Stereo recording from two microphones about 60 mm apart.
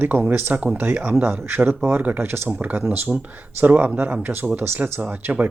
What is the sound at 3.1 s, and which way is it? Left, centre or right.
Speech, centre.